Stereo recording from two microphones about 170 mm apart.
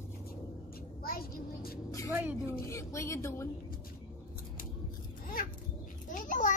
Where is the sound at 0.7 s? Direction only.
60° left (ahead or behind).